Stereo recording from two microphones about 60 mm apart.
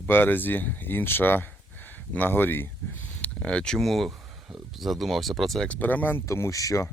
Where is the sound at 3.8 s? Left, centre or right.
Centre.